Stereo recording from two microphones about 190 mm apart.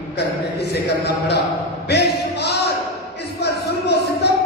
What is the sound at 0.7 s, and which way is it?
Speech, 60° left (ahead or behind).